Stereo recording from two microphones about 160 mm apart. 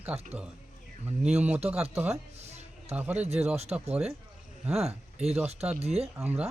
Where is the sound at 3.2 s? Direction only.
40° right (ahead or behind).